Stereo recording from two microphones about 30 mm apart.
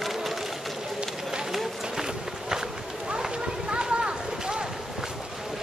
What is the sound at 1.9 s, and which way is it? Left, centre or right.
Run, centre.